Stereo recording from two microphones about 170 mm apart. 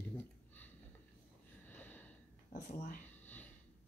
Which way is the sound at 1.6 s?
10° left (ahead or behind).